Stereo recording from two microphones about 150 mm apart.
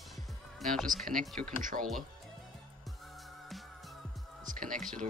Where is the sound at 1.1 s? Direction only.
5° left (ahead or behind).